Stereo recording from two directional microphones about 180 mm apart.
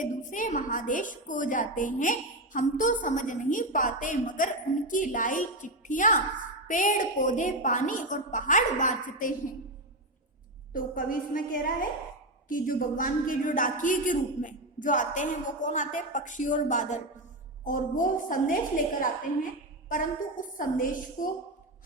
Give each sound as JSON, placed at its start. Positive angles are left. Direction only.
{"t": 0.0, "sound": "a woman's voice", "side_deg": 45}
{"t": 10.7, "sound": "a woman's voice", "side_deg": 50}